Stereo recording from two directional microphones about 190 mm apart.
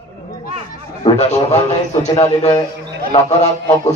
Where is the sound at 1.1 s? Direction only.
35° left (ahead or behind).